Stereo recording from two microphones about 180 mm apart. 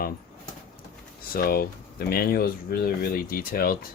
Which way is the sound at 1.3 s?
55° left (ahead or behind).